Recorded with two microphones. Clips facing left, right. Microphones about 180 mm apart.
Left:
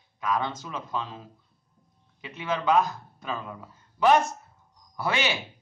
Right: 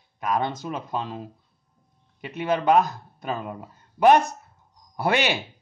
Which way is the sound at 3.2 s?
45° right (ahead or behind).